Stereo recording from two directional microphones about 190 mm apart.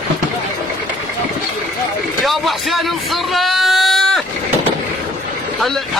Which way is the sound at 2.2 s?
Centre (ahead or behind).